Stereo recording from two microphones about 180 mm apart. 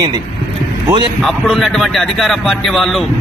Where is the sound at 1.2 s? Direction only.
Centre (ahead or behind).